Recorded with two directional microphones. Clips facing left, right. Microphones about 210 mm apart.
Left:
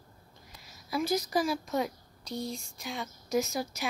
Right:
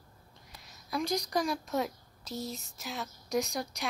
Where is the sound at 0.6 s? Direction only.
Centre (ahead or behind).